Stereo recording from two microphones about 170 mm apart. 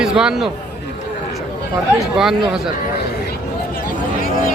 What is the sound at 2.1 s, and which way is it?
Speech, 5° right (ahead or behind).